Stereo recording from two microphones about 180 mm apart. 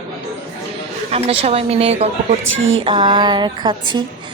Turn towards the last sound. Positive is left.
turn(degrees=-25)  # may be behind; listen again after turning